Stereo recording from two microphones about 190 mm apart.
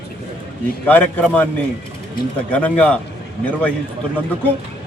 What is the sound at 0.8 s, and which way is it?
Speech, 10° left (ahead or behind).